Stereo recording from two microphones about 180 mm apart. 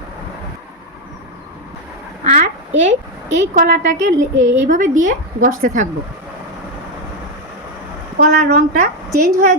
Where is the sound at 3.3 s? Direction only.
45° right (ahead or behind).